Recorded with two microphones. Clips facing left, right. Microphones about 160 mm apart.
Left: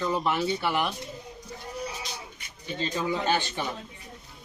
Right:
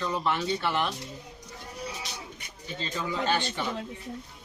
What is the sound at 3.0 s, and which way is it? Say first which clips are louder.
Speech: left 1 dB; 15° left (ahead or behind).